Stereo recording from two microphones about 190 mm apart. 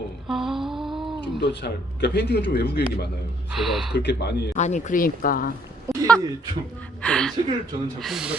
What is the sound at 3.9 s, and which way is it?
Speech, 60° left (ahead or behind).